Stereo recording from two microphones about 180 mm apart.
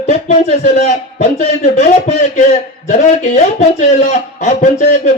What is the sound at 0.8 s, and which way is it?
A man's voice, 35° left (ahead or behind).